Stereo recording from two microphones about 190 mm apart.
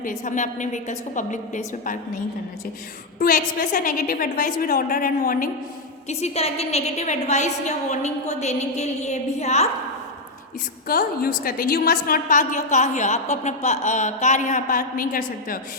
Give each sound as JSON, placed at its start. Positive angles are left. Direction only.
{"t": 0.0, "sound": "a woman's voice", "side_deg": 40}
{"t": 3.2, "sound": "a woman's voice", "side_deg": 45}
{"t": 6.1, "sound": "a woman's voice", "side_deg": 35}
{"t": 10.8, "sound": "a woman's voice", "side_deg": 50}